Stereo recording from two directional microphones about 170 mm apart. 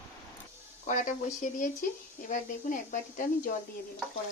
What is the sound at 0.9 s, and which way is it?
Speech, 50° left (ahead or behind).